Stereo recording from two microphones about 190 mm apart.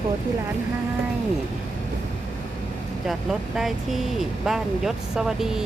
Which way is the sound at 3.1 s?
Centre (ahead or behind).